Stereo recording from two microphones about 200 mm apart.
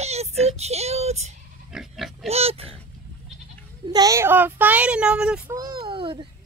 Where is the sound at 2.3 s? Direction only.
30° right (ahead or behind).